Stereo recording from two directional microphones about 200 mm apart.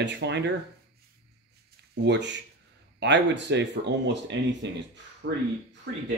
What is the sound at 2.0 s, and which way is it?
Speech, 60° right (ahead or behind).